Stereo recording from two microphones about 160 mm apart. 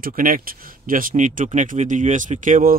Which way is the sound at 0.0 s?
60° right (ahead or behind).